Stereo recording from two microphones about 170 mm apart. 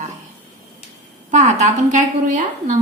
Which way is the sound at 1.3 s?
45° right (ahead or behind).